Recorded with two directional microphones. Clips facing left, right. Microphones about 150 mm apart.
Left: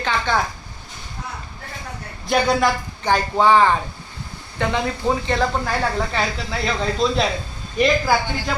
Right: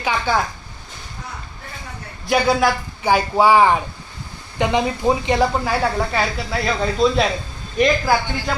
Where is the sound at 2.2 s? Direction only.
Centre (ahead or behind).